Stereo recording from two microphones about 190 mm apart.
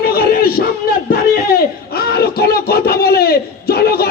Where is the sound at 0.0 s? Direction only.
55° left (ahead or behind).